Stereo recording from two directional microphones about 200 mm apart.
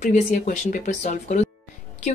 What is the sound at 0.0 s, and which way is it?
Speech, 40° left (ahead or behind).